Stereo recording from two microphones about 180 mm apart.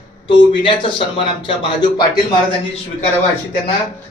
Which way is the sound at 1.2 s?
30° left (ahead or behind).